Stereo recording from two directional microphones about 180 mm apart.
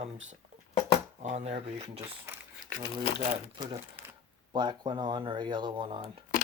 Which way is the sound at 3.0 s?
30° left (ahead or behind).